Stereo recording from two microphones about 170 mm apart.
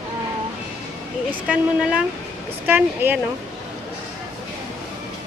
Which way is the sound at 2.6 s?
10° right (ahead or behind).